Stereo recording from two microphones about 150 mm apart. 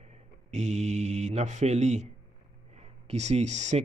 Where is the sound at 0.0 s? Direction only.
50° right (ahead or behind).